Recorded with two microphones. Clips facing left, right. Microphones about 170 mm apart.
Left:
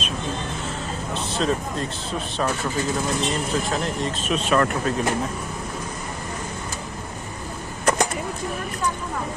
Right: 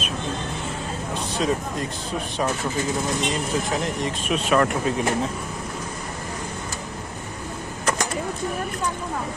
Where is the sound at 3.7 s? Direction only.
15° right (ahead or behind).